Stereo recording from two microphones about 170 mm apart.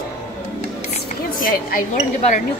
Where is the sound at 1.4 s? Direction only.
60° left (ahead or behind).